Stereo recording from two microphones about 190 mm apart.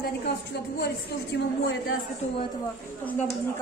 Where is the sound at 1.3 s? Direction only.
65° left (ahead or behind).